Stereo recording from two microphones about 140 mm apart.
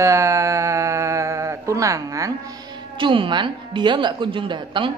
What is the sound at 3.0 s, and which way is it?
Speech, 35° right (ahead or behind).